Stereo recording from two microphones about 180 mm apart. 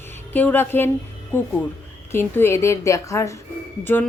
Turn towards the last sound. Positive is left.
turn(degrees=10)  # may be behind; listen again after turning